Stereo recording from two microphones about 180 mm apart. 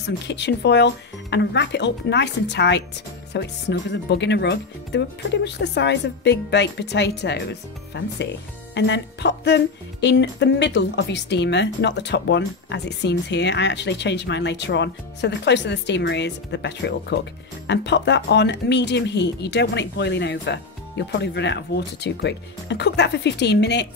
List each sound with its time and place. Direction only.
0.0 s speech: 75° left (ahead or behind)